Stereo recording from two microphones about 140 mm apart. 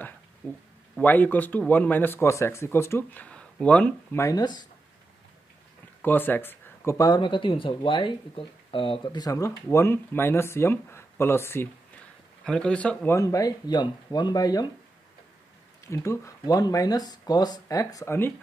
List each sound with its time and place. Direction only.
0.4 s speech: 15° left (ahead or behind)
4.2 s speech: 25° left (ahead or behind)
6.0 s speech: 15° left (ahead or behind)
15.9 s speech: 20° left (ahead or behind)